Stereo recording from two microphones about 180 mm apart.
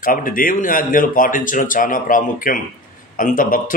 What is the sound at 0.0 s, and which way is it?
A man's voice, 50° left (ahead or behind).